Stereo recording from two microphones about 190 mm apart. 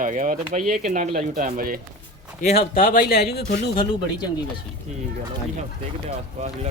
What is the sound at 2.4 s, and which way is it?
Speech, 35° left (ahead or behind).